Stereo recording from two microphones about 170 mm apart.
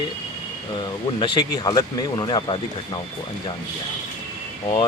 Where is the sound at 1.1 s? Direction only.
30° left (ahead or behind).